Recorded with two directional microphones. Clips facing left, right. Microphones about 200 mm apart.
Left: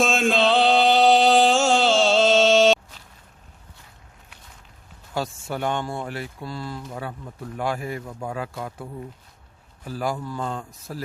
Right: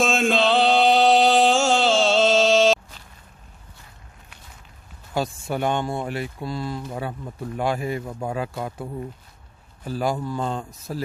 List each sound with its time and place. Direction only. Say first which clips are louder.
0.0 s mantra: even; centre (ahead or behind)
5.1 s speech: right 3 dB; 15° right (ahead or behind)